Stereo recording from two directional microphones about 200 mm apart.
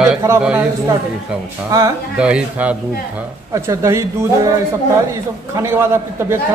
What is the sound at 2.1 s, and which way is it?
A man's voice, 5° right (ahead or behind).